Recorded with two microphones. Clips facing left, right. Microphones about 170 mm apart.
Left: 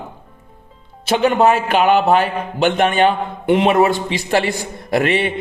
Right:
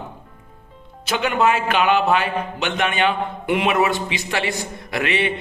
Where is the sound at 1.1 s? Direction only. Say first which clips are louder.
Left 5 dB; 40° left (ahead or behind).